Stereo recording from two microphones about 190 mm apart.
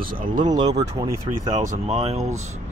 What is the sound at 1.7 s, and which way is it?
Speech, 35° right (ahead or behind).